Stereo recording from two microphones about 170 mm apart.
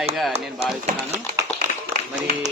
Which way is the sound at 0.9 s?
55° right (ahead or behind).